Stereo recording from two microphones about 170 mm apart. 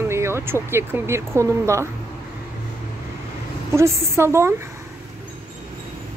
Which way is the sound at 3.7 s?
15° right (ahead or behind).